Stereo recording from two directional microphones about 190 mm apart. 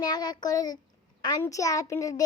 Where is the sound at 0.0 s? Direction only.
20° left (ahead or behind).